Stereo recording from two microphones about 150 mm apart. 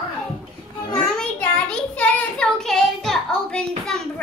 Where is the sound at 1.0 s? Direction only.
5° left (ahead or behind).